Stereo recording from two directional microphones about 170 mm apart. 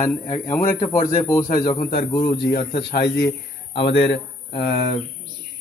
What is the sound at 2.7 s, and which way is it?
Speech, 75° left (ahead or behind).